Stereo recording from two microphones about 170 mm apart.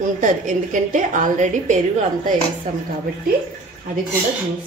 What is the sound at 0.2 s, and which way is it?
A woman's voice, 50° right (ahead or behind).